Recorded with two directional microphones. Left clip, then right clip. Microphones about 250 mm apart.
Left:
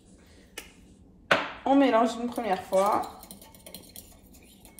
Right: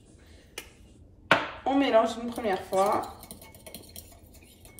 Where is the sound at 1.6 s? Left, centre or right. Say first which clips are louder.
Left 4 dB; centre.